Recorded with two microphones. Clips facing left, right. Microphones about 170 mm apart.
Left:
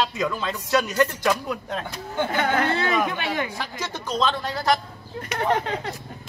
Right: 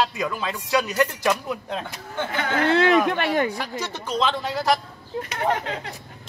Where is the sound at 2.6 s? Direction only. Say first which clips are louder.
Right 6 dB; 80° right.